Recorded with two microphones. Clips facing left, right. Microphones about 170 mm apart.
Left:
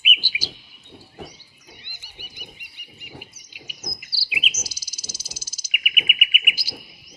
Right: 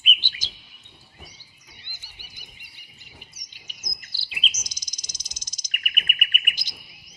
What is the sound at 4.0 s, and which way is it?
Bird, 5° left (ahead or behind).